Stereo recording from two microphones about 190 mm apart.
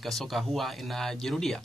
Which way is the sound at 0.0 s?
Centre (ahead or behind).